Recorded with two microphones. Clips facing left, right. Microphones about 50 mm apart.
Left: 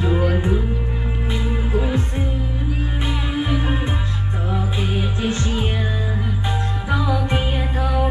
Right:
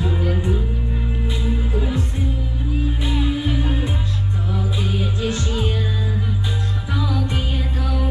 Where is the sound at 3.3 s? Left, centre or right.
Left.